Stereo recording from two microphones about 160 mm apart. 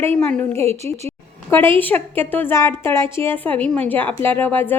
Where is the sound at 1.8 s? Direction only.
10° left (ahead or behind).